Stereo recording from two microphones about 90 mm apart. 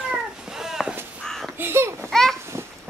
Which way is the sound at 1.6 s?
30° right (ahead or behind).